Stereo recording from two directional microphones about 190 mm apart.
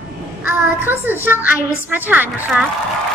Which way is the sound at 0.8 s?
10° right (ahead or behind).